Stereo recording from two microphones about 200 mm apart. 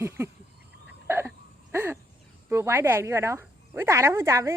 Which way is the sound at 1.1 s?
10° right (ahead or behind).